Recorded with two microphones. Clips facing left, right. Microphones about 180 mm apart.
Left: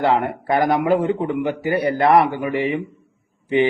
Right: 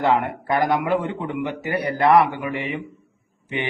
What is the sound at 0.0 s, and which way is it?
A man's voice, 30° left (ahead or behind).